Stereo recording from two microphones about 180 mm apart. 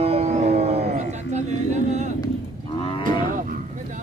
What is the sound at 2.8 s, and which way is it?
Cattle, 25° left (ahead or behind).